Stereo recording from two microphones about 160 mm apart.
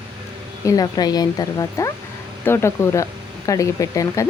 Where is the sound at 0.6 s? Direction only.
20° left (ahead or behind).